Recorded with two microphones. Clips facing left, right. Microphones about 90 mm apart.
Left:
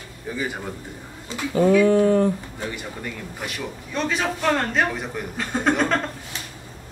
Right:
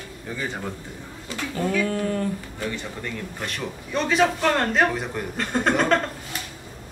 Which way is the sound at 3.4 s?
5° left (ahead or behind).